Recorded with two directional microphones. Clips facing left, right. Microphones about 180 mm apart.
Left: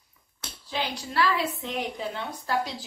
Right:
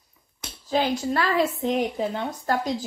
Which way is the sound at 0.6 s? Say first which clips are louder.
Right 9 dB; 45° right (ahead or behind).